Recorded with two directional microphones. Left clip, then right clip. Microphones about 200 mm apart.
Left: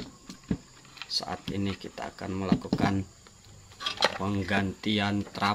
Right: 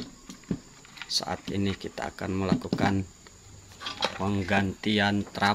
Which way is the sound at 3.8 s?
50° left (ahead or behind).